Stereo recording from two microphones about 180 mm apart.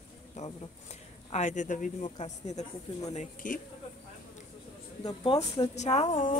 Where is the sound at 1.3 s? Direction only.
40° left (ahead or behind).